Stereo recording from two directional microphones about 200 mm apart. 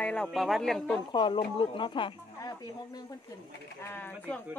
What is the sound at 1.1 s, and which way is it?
Speech, 20° left (ahead or behind).